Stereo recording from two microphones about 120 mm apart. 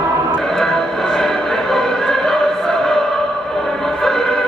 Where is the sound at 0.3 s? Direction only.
Centre (ahead or behind).